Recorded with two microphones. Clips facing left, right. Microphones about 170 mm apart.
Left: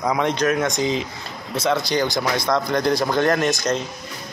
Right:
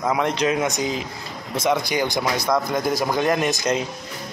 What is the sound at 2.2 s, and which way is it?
A man's voice, 5° right (ahead or behind).